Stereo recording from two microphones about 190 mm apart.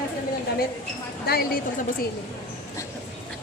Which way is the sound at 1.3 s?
50° left (ahead or behind).